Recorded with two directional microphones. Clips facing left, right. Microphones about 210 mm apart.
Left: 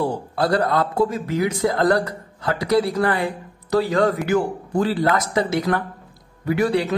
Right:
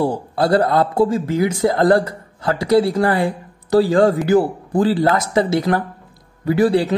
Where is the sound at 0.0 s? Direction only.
30° right (ahead or behind).